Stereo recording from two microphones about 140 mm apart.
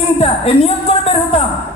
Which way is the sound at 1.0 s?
45° left (ahead or behind).